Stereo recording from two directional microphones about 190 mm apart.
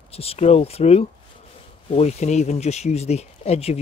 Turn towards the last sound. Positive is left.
turn(degrees=35)  # may be behind; listen again after turning